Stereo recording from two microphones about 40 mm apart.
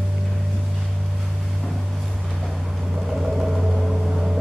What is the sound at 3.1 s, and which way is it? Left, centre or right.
Vehicle, centre.